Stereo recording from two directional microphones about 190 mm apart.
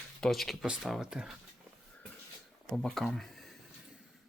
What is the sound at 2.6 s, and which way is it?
Speech, centre (ahead or behind).